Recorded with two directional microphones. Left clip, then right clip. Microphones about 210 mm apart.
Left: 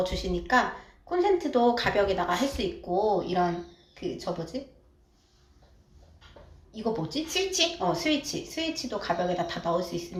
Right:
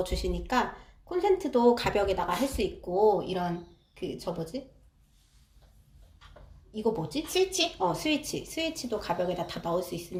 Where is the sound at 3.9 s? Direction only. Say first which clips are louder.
Left 2 dB; 55° right (ahead or behind).